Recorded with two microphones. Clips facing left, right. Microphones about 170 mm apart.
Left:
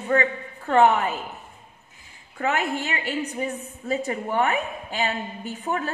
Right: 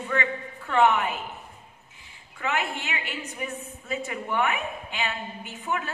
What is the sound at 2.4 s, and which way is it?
A woman's voice, 45° left (ahead or behind).